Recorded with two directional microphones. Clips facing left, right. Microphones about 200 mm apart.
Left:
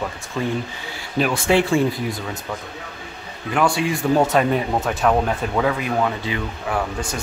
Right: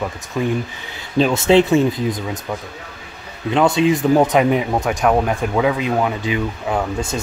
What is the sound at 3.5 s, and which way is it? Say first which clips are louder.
Speech: right 5 dB; 20° right (ahead or behind).